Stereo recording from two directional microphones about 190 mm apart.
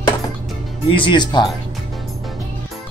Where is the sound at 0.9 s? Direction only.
25° left (ahead or behind).